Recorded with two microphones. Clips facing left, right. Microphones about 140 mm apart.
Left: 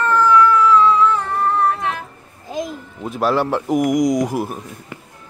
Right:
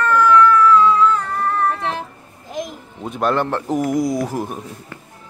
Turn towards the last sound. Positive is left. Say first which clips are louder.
# left 3 dB
turn(degrees=10)  # may be behind; listen again after turning